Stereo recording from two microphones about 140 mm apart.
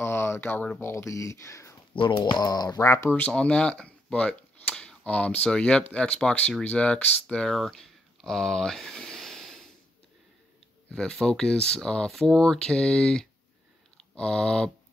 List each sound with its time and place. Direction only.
0.0 s speech: 15° left (ahead or behind)
2.0 s speech: 35° left (ahead or behind); by 9.7 s centre (ahead or behind)
10.9 s speech: 5° left (ahead or behind)
13.9 s a sound: 5° left (ahead or behind)